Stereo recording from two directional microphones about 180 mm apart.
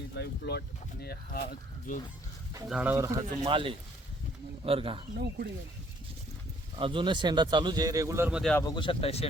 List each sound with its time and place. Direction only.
0.2 s speech: 65° left (ahead or behind)
2.6 s speech: 5° right (ahead or behind); by 5.0 s 30° right (ahead or behind)
5.1 s speech: 60° right (ahead or behind)
6.7 s speech: 30° right (ahead or behind)
8.4 s speech: 5° left (ahead or behind)
8.6 s speech: 25° left (ahead or behind)